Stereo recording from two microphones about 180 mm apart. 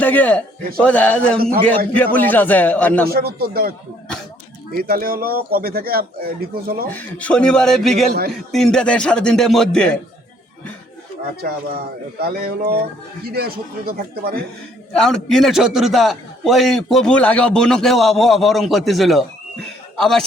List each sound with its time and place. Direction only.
0.0 s speech: 10° left (ahead or behind)
3.1 s speech: 60° right (ahead or behind)
4.7 s speech: 55° right (ahead or behind)
6.9 s a man's voice: 5° left (ahead or behind)
12.2 s speech: 60° right (ahead or behind)
14.9 s a man's voice: 5° left (ahead or behind)